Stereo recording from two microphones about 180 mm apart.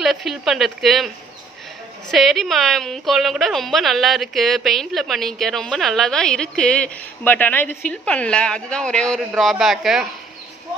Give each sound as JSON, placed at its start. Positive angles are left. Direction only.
{"t": 0.0, "sound": "a woman's voice", "side_deg": 0}